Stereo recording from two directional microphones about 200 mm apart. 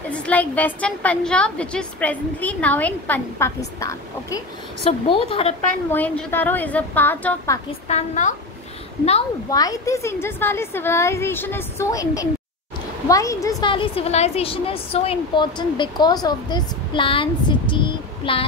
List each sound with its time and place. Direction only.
0.1 s a woman's voice: 10° left (ahead or behind)
5.0 s a woman's voice: 25° left (ahead or behind)
5.9 s a woman's voice: 10° left (ahead or behind)
7.9 s a woman's voice: 35° left (ahead or behind)
9.5 s a woman's voice: 15° left (ahead or behind)